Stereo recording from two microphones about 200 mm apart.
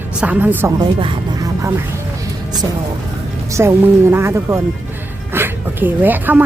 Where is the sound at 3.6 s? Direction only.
15° right (ahead or behind).